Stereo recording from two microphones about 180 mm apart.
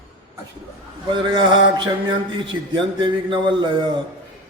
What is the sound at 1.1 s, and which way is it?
Speech, 25° right (ahead or behind).